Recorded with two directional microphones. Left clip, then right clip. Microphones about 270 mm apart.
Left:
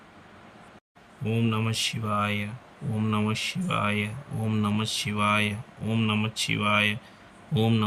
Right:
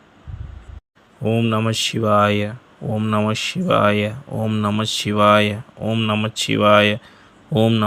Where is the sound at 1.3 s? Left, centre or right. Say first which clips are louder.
Right 8 dB; centre.